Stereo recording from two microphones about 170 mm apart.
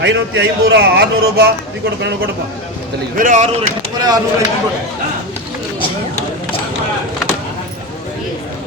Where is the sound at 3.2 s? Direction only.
45° right (ahead or behind).